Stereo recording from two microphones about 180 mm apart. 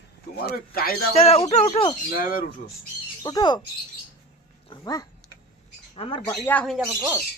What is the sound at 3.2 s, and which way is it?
Speech, 25° left (ahead or behind).